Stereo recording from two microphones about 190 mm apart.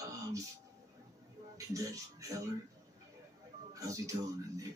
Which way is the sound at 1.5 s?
15° right (ahead or behind).